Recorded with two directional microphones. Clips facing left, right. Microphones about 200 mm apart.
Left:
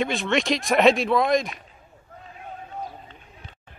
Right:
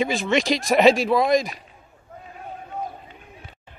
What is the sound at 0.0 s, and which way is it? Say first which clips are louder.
Speech: right 2 dB; centre (ahead or behind).